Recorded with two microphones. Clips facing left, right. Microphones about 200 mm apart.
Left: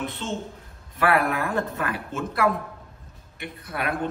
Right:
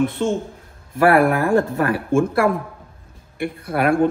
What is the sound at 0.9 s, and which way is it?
Speech, 50° right (ahead or behind).